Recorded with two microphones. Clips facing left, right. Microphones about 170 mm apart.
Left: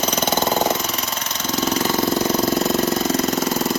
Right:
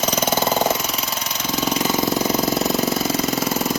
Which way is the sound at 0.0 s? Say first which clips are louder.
Even; 5° right (ahead or behind).